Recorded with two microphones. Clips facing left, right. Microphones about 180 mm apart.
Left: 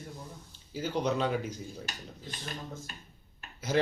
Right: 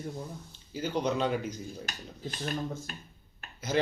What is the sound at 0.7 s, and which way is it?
Speech, 5° left (ahead or behind).